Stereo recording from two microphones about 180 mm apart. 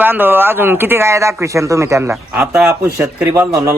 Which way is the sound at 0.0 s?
10° right (ahead or behind).